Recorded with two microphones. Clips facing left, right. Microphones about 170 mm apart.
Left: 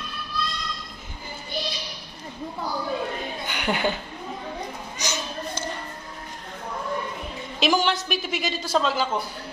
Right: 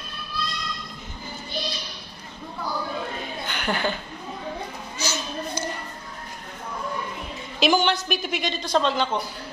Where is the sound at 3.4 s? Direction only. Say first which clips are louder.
Left 1 dB; 10° left (ahead or behind).